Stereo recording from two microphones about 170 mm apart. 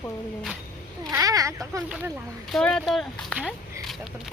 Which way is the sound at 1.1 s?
20° right (ahead or behind).